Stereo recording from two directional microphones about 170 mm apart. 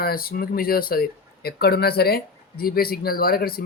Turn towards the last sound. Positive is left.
turn(degrees=60)  # may be behind; listen again after turning